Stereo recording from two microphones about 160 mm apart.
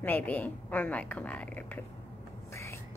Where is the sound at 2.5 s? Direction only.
15° left (ahead or behind).